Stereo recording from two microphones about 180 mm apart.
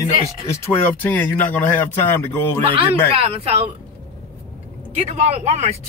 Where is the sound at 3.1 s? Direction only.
35° right (ahead or behind).